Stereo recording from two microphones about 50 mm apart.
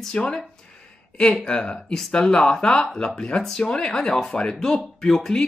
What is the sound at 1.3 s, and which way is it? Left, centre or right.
Speech, centre.